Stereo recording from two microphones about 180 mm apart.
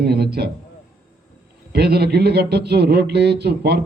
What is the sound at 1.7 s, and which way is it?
A man's voice, 65° right (ahead or behind).